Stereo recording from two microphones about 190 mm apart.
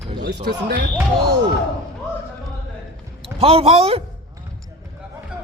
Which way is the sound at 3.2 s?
30° right (ahead or behind).